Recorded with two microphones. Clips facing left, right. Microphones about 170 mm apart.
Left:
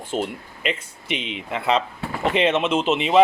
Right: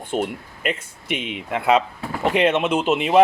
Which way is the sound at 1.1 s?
50° right (ahead or behind).